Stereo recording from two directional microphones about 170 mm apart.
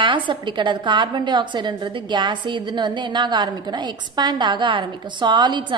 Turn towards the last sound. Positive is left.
turn(degrees=-25)  # may be behind; listen again after turning